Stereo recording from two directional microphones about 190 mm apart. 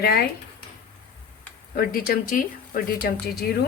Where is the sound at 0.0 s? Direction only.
55° left (ahead or behind).